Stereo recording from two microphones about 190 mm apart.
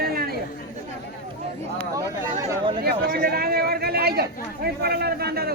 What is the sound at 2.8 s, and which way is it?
A man's voice, 55° right (ahead or behind).